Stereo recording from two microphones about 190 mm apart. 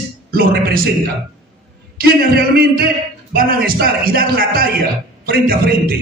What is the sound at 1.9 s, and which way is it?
A man's voice, 55° right (ahead or behind).